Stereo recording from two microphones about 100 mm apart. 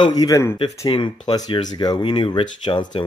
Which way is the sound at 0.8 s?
50° left (ahead or behind).